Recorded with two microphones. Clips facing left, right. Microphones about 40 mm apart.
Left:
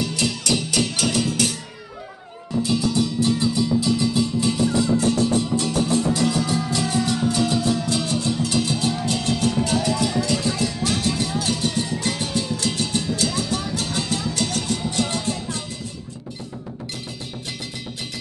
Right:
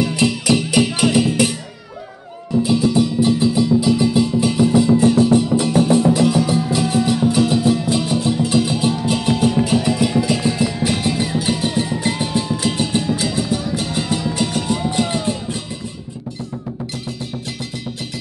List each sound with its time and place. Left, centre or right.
0.0 s music: centre
2.6 s music: centre